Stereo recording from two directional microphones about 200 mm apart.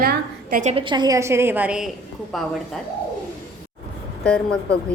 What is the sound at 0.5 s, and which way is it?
A woman's voice, 30° right (ahead or behind).